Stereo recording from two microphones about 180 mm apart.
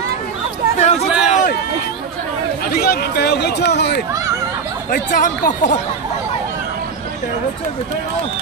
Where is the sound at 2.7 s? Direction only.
60° left (ahead or behind).